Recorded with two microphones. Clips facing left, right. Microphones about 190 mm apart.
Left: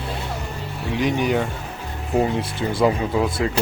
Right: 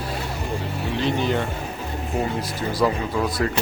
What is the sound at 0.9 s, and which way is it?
Speech, 15° left (ahead or behind).